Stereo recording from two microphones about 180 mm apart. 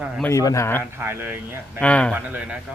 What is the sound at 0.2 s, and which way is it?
Speech, 15° left (ahead or behind).